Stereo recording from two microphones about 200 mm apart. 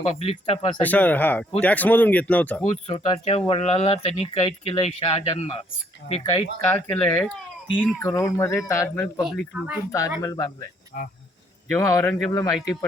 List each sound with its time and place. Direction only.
0.0 s speech: 30° left (ahead or behind)
0.8 s speech: 10° left (ahead or behind)
2.6 s speech: 35° left (ahead or behind)
6.7 s speech: 10° left (ahead or behind)
9.2 s speech: 5° right (ahead or behind)
10.2 s speech: 15° left (ahead or behind)
10.9 s speech: 45° left (ahead or behind)
11.7 s speech: 15° left (ahead or behind)